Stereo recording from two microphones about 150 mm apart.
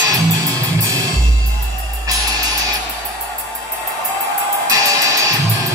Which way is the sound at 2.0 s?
25° right (ahead or behind).